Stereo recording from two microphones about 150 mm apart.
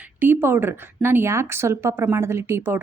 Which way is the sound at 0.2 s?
15° right (ahead or behind).